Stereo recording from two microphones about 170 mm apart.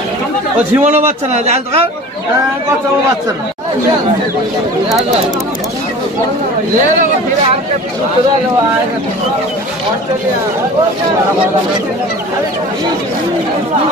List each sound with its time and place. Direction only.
0.7 s a man's voice: 15° right (ahead or behind)
1.0 s a man's voice: 40° right (ahead or behind)